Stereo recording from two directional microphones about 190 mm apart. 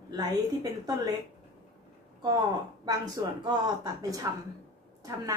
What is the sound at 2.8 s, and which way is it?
A woman's voice, 20° right (ahead or behind).